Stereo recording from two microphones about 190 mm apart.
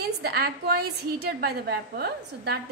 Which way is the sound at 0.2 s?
55° right (ahead or behind).